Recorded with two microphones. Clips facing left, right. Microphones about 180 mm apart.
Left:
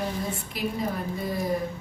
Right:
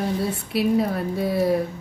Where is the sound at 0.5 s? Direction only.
70° right (ahead or behind).